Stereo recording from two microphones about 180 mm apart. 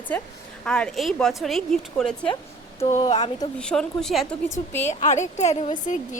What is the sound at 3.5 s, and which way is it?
Speech, 5° left (ahead or behind).